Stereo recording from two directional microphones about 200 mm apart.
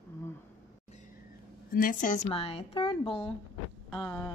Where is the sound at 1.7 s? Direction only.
45° left (ahead or behind).